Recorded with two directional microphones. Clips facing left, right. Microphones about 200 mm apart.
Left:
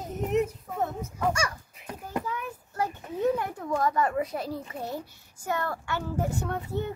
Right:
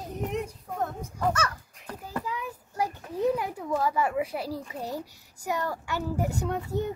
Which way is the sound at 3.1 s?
5° right (ahead or behind).